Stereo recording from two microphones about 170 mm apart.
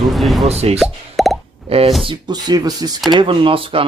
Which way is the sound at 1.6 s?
35° right (ahead or behind).